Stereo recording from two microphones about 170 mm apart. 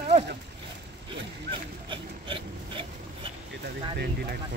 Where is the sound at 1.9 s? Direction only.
30° right (ahead or behind).